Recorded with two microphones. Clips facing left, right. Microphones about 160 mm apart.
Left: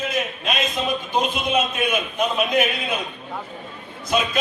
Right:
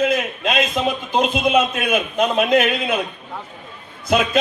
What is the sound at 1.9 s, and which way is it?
Speech, 90° right.